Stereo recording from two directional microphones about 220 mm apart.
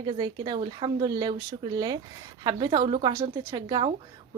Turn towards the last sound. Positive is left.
turn(degrees=-20)  # may be behind; listen again after turning